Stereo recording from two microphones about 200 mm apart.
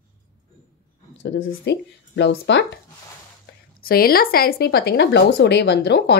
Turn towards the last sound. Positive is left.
turn(degrees=55)  # may be behind; listen again after turning